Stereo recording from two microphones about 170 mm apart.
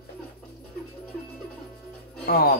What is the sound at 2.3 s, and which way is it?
Speech, 65° left (ahead or behind).